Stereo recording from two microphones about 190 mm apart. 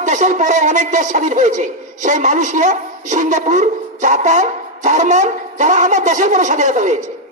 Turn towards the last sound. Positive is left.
turn(degrees=-40)  # may be behind; listen again after turning